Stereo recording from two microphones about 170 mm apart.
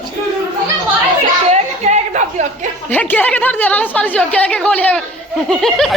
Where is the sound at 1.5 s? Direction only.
40° right (ahead or behind).